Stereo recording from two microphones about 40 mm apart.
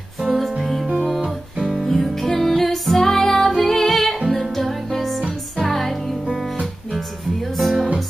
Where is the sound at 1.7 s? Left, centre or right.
Centre.